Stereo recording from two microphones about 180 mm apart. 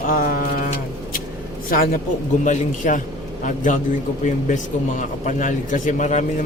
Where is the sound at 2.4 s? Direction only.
45° left (ahead or behind).